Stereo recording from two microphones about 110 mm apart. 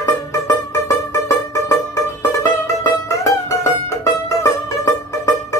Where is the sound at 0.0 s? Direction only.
30° left (ahead or behind).